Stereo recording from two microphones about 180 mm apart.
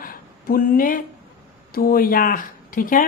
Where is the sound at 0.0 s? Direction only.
50° left (ahead or behind).